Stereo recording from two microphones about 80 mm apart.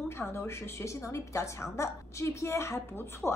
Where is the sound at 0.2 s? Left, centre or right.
Left.